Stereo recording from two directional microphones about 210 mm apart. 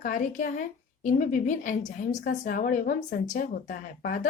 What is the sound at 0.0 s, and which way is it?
A woman's voice, 40° left (ahead or behind).